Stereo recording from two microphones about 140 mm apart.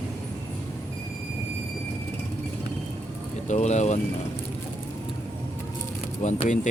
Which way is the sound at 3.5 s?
55° left (ahead or behind).